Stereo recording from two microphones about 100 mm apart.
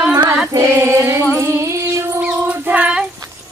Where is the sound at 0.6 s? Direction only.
30° right (ahead or behind).